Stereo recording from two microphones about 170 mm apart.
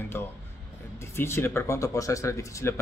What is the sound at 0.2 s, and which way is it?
Speech, 15° left (ahead or behind).